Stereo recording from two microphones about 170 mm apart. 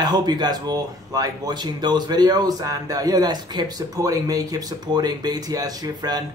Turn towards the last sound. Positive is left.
turn(degrees=-20)  # may be behind; listen again after turning